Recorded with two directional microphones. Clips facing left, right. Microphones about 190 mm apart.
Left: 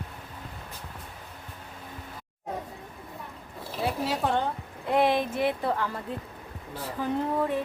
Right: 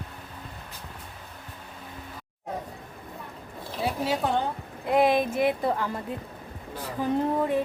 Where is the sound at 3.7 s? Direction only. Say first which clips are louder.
Right 1 dB; centre (ahead or behind).